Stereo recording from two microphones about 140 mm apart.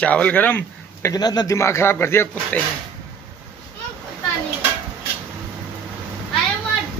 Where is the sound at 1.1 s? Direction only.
30° left (ahead or behind); by 2.6 s 15° left (ahead or behind).